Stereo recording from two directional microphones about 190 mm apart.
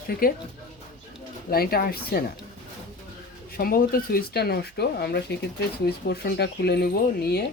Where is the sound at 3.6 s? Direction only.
50° left (ahead or behind).